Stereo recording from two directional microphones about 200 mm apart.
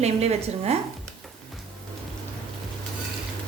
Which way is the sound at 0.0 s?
30° right (ahead or behind).